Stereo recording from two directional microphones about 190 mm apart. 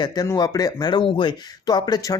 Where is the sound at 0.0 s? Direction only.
20° left (ahead or behind).